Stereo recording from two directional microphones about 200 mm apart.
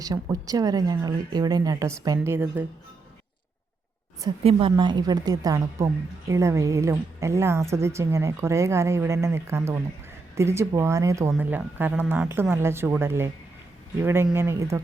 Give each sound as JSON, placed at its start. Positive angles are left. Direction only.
{"t": 0.0, "sound": "a woman's voice", "side_deg": -15}
{"t": 4.4, "sound": "a woman's voice", "side_deg": -25}